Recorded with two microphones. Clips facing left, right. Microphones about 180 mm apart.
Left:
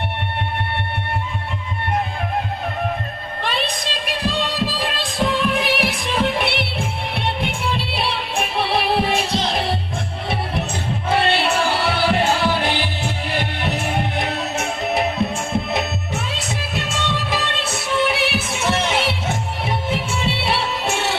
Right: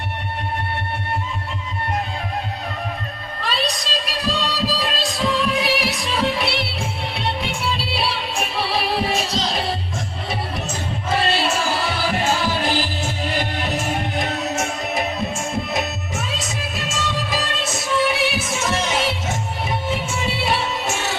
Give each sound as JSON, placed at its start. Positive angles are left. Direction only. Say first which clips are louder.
{"t": 3.4, "sound": "music", "louder": "even", "side_deg": 55}
{"t": 11.1, "sound": "music", "louder": "left 2 dB", "side_deg": 60}
{"t": 20.4, "sound": "music", "louder": "even", "side_deg": 60}